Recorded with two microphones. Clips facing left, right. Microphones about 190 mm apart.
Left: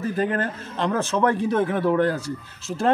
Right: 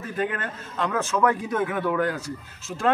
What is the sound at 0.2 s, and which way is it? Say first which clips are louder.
Speech: left 1 dB; 35° left (ahead or behind).